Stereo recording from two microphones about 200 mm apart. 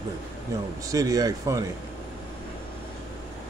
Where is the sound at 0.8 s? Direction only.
15° right (ahead or behind).